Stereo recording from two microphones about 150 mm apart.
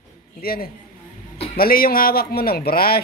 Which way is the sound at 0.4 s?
90° left.